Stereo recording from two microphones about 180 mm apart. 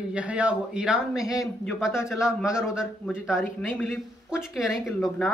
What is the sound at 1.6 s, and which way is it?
Speech, centre (ahead or behind).